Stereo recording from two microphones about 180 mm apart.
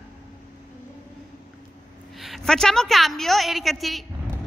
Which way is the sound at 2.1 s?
Centre (ahead or behind).